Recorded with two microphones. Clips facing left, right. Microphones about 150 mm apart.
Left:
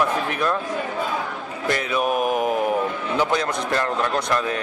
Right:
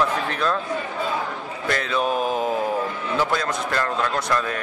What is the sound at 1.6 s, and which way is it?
Speech, 15° left (ahead or behind).